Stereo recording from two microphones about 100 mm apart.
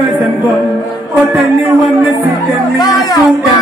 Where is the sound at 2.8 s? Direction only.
40° left (ahead or behind).